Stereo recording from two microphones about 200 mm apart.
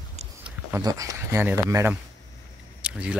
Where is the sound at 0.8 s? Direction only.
20° right (ahead or behind).